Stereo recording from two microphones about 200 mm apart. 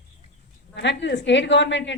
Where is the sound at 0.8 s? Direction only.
60° left (ahead or behind).